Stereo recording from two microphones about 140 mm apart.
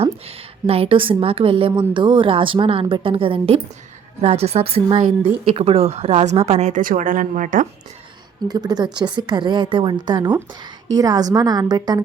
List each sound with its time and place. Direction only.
0.0 s a woman's voice: 45° right (ahead or behind); by 7.7 s 65° right (ahead or behind)
8.4 s a woman's voice: 30° right (ahead or behind)